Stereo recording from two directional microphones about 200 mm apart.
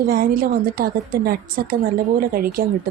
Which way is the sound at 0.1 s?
45° right (ahead or behind).